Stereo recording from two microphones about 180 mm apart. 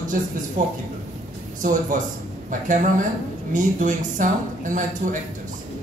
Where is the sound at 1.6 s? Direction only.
45° right (ahead or behind).